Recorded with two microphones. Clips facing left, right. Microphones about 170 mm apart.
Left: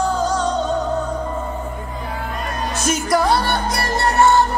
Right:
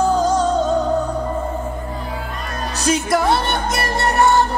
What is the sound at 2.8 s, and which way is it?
Music, 25° right (ahead or behind).